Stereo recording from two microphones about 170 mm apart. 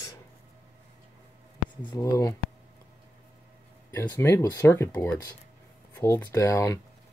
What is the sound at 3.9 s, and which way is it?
Speech, 15° left (ahead or behind).